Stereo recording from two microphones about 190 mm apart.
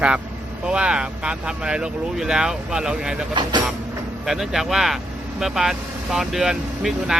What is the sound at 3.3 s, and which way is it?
Speech, 25° right (ahead or behind).